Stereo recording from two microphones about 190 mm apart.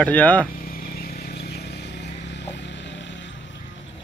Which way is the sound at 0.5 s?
50° left (ahead or behind).